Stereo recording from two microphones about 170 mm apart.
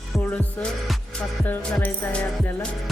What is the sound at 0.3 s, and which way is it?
Music, 5° left (ahead or behind).